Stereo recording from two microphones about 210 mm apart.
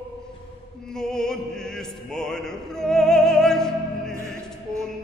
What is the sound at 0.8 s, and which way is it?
Opera, 5° left (ahead or behind).